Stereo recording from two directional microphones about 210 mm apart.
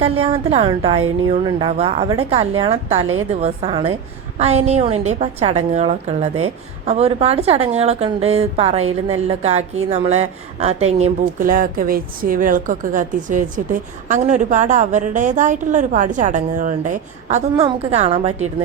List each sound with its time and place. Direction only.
0.0 s a woman's voice: 30° right (ahead or behind)